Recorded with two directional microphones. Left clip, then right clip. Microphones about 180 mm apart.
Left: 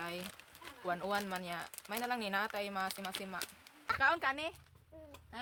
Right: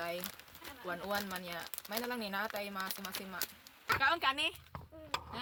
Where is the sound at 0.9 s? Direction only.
25° left (ahead or behind).